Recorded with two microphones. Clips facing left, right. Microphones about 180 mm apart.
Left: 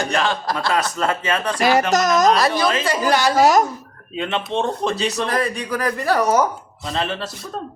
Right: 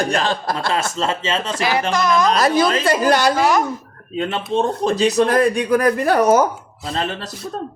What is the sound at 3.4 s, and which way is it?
Speech, 40° left (ahead or behind).